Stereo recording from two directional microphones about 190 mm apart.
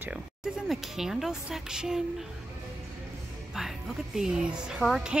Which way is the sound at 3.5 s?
Centre (ahead or behind).